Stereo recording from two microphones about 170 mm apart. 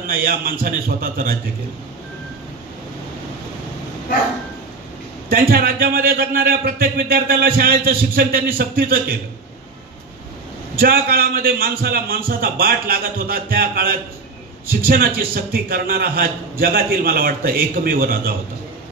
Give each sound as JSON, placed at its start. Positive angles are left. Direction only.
{"t": 0.0, "sound": "a man's voice", "side_deg": -55}
{"t": 5.3, "sound": "a man's voice", "side_deg": -60}
{"t": 10.8, "sound": "a man's voice", "side_deg": -60}